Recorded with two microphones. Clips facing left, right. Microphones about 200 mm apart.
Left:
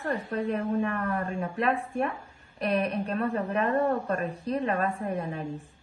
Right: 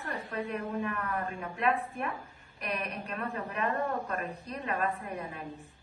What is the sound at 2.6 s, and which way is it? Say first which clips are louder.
A woman's voice: left 9 dB; 30° left (ahead or behind).